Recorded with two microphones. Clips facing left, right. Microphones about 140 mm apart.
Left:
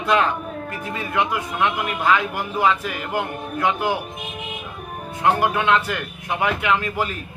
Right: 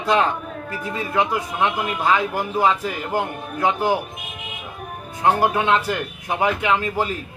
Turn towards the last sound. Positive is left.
turn(degrees=-30)  # may be behind; listen again after turning